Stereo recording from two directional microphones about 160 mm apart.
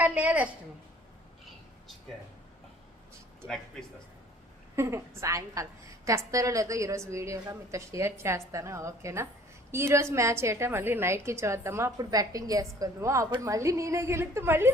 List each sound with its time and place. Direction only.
0.0 s a woman's voice: 10° right (ahead or behind)
3.4 s speech: centre (ahead or behind)
4.8 s a woman's voice: 15° right (ahead or behind)